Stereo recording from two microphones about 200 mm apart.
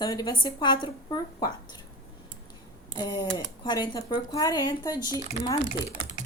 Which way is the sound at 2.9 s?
20° left (ahead or behind).